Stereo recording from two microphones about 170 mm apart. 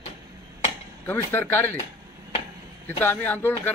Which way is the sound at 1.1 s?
10° left (ahead or behind).